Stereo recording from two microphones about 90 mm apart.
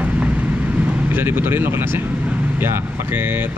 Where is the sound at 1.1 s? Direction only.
25° right (ahead or behind).